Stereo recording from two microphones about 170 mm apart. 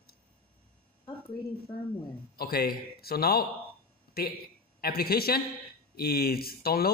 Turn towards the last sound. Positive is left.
turn(degrees=65)  # may be behind; listen again after turning